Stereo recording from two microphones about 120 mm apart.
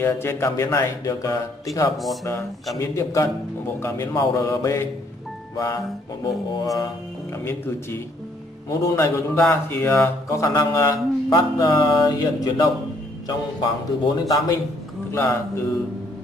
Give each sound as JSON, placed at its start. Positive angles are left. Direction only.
{"t": 0.0, "sound": "speech", "side_deg": 20}
{"t": 4.1, "sound": "speech", "side_deg": 30}
{"t": 6.5, "sound": "speech", "side_deg": 30}
{"t": 7.4, "sound": "speech", "side_deg": 20}
{"t": 15.1, "sound": "speech", "side_deg": 20}